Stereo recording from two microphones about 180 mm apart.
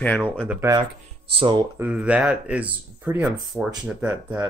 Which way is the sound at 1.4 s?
25° right (ahead or behind).